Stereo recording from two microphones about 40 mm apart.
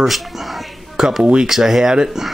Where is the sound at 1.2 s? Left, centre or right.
Right.